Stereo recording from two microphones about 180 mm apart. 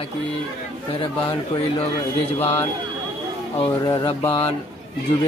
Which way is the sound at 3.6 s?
25° left (ahead or behind).